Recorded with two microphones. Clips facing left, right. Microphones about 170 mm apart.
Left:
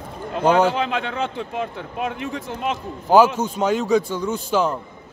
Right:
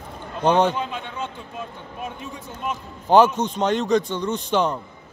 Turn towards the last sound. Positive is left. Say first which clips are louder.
# left 1 dB
turn(degrees=5)  # may be behind; listen again after turning